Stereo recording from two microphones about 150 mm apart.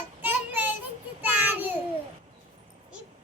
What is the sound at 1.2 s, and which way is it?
Child singing, 10° right (ahead or behind).